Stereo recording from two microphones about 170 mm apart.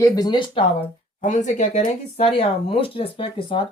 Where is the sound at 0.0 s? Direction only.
25° left (ahead or behind).